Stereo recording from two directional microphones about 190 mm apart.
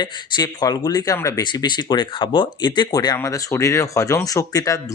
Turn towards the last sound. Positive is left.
turn(degrees=15)  # may be behind; listen again after turning